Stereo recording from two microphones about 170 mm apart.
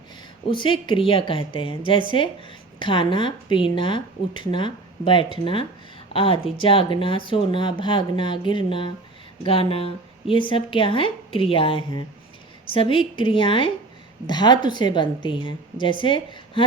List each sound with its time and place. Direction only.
0.5 s a woman's voice: 30° left (ahead or behind)